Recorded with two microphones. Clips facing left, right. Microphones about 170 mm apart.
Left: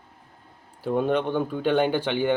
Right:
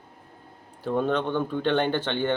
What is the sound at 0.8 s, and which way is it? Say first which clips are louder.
Speech: left 2 dB; 10° left (ahead or behind).